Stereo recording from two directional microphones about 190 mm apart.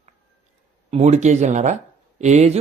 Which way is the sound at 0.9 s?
35° right (ahead or behind).